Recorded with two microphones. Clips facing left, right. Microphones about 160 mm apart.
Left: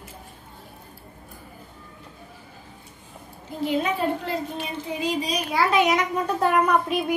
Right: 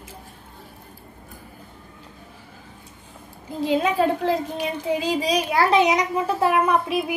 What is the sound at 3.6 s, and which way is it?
A woman's voice, 90° right.